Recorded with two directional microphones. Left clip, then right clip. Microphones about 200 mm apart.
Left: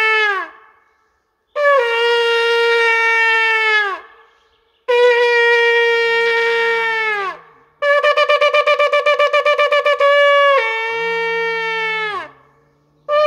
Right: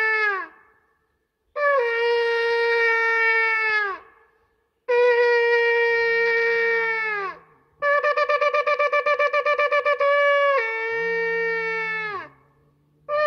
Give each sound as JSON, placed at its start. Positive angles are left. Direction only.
{"t": 0.0, "sound": "a sound", "side_deg": 20}
{"t": 1.5, "sound": "shofar", "side_deg": 20}
{"t": 7.8, "sound": "wind instrument", "side_deg": 20}